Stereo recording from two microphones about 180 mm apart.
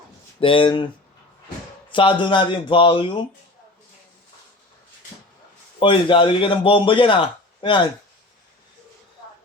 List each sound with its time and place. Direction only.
0.3 s a man's voice: 30° left (ahead or behind)
1.9 s a man's voice: 30° left (ahead or behind)
5.8 s a man's voice: 30° left (ahead or behind)